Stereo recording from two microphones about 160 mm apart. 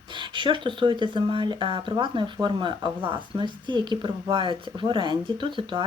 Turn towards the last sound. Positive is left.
turn(degrees=-30)  # may be behind; listen again after turning